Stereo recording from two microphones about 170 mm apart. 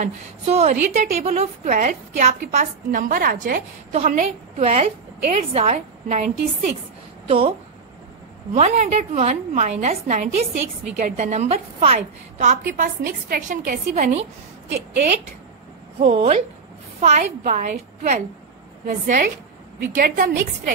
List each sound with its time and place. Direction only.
0.0 s a woman's voice: 40° right (ahead or behind); by 3.6 s 60° right (ahead or behind)
3.9 s a woman's voice: 40° right (ahead or behind)
8.5 s a woman's voice: 40° right (ahead or behind)
16.0 s a woman's voice: 35° right (ahead or behind); by 20.7 s 55° right (ahead or behind)